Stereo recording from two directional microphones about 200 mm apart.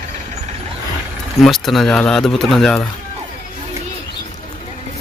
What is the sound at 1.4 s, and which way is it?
Speech, centre (ahead or behind).